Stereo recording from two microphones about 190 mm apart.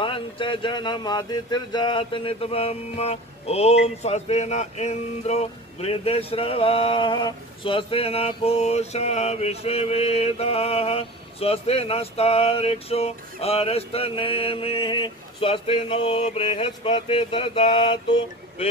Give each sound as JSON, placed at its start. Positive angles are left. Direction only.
{"t": 0.0, "sound": "speech", "side_deg": 25}